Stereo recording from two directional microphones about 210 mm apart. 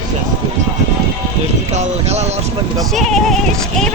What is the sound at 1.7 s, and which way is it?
Speech, 30° right (ahead or behind).